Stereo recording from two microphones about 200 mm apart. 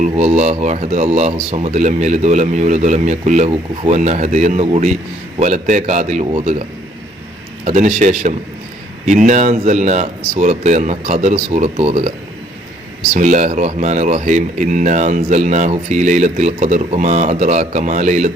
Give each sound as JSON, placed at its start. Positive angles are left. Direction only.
{"t": 0.0, "sound": "speech", "side_deg": -35}
{"t": 13.1, "sound": "speech", "side_deg": -35}